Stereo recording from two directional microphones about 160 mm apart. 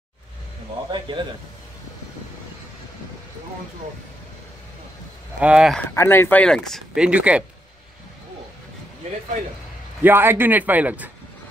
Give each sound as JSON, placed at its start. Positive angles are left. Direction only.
{"t": 0.9, "sound": "a sound", "side_deg": -30}
{"t": 5.4, "sound": "speech", "side_deg": -5}
{"t": 5.9, "sound": "speech", "side_deg": 15}
{"t": 7.1, "sound": "a man's voice", "side_deg": -10}
{"t": 10.0, "sound": "a man's voice", "side_deg": -15}